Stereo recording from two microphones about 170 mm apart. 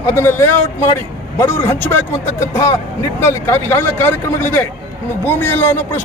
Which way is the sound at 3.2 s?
15° left (ahead or behind).